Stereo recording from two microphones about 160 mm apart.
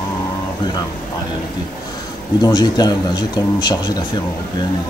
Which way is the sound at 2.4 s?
25° left (ahead or behind).